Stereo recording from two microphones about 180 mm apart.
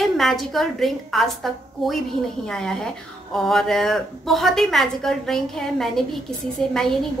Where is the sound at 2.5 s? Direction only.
5° left (ahead or behind).